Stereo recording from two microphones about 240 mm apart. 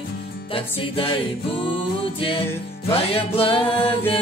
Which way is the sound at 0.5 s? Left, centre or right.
Left.